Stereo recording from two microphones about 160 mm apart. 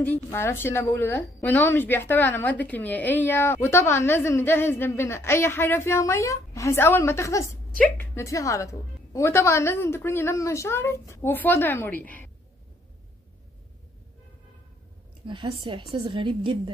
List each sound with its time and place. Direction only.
0.0 s a woman's voice: 15° left (ahead or behind)
15.2 s a woman's voice: 30° right (ahead or behind)